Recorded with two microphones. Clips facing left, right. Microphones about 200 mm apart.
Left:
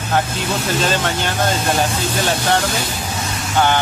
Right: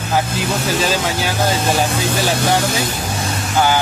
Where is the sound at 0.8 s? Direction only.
5° right (ahead or behind).